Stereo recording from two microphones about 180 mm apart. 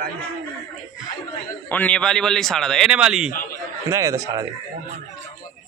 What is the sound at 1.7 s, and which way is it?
A man's voice, 5° left (ahead or behind).